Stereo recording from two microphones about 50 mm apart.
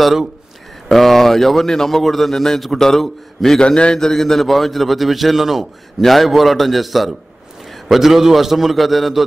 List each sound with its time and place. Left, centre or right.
0.8 s a man's voice: centre
3.5 s a man's voice: centre
4.0 s a man's voice: centre